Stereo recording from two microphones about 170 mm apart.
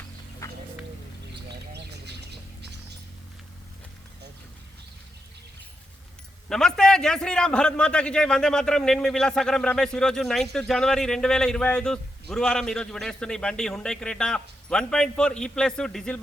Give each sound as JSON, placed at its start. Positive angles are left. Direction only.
{"t": 0.4, "sound": "music", "side_deg": 15}
{"t": 1.5, "sound": "bird", "side_deg": -80}
{"t": 6.5, "sound": "a man's voice", "side_deg": 5}